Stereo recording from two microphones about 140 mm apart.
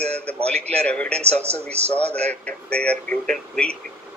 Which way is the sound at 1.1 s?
50° right (ahead or behind).